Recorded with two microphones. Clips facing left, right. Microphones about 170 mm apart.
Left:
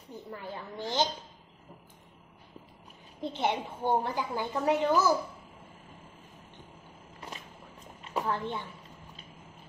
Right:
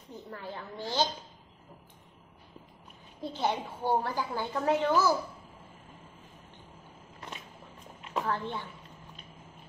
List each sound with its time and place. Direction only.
0.1 s a woman's voice: 15° left (ahead or behind)
3.2 s a woman's voice: 20° left (ahead or behind)
8.1 s a woman's voice: 15° left (ahead or behind)